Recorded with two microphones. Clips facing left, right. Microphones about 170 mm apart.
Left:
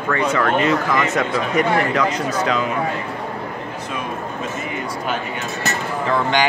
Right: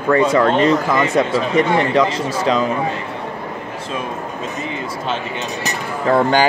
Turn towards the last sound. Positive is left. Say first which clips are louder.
# right 4 dB
turn(degrees=-35)  # may be behind; listen again after turning